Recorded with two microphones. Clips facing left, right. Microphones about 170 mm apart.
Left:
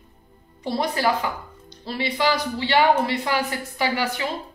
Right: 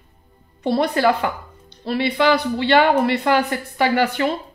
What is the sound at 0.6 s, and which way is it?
A woman's voice, 60° right (ahead or behind).